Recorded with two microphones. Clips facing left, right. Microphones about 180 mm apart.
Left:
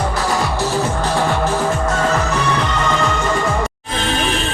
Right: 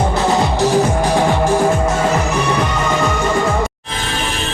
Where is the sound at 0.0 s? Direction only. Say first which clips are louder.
Right 4 dB; 25° right (ahead or behind).